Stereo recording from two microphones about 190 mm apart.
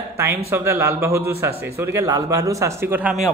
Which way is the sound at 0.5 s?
15° right (ahead or behind).